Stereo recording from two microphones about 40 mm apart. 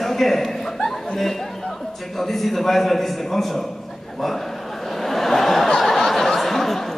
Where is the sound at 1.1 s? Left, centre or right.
Centre.